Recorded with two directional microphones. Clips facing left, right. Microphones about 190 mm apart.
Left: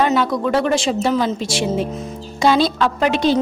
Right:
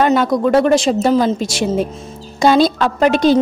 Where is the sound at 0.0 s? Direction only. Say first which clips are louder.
Right 4 dB; 50° right (ahead or behind).